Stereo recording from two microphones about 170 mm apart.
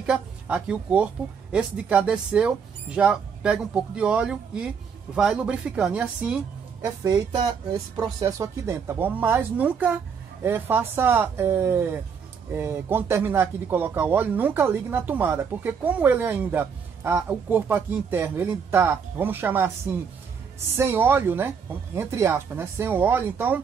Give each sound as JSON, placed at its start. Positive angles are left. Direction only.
{"t": 0.0, "sound": "speech", "side_deg": -5}
{"t": 6.8, "sound": "a woman's voice", "side_deg": -20}